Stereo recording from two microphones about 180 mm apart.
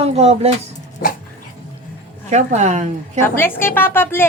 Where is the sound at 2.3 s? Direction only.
40° right (ahead or behind).